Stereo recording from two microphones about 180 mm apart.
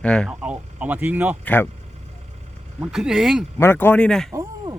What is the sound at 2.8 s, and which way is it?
Speech, 5° right (ahead or behind).